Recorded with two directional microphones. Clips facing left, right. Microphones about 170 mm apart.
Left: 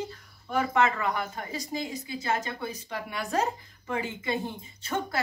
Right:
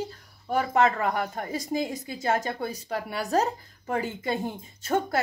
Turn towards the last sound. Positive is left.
turn(degrees=-45)  # may be behind; listen again after turning